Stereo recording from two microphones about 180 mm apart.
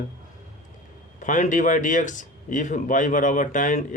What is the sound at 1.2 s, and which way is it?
Speech, 45° left (ahead or behind).